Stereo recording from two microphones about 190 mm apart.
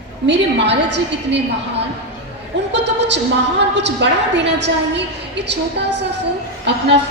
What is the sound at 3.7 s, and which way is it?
A woman's voice, 65° right (ahead or behind).